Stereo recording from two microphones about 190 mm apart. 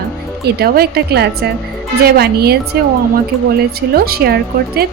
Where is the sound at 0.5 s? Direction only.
55° right (ahead or behind).